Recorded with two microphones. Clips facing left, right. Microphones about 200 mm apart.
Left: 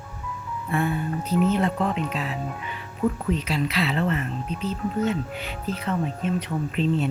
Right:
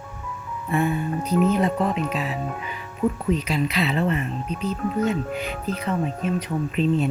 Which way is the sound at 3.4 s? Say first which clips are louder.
Right 2 dB; 15° right (ahead or behind).